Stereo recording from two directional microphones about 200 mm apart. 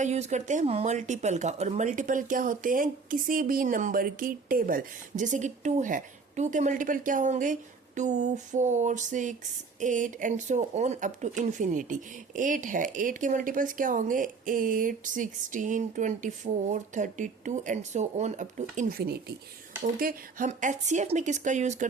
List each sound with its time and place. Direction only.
0.0 s speech: 35° right (ahead or behind)
18.8 s speech: 50° right (ahead or behind)